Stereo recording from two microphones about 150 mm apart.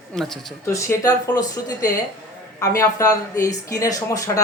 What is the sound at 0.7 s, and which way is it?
Speech, 20° left (ahead or behind).